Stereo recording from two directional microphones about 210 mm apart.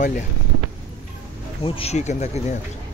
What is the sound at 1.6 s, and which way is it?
Speech, 25° left (ahead or behind).